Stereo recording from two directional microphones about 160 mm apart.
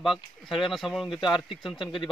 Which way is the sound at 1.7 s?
30° left (ahead or behind).